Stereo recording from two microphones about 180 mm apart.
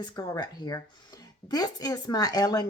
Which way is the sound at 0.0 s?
20° left (ahead or behind).